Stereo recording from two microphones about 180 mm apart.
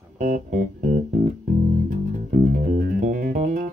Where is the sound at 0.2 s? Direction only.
45° right (ahead or behind).